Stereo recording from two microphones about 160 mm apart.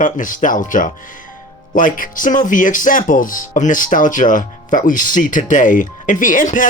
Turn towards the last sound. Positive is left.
turn(degrees=55)  # may be behind; listen again after turning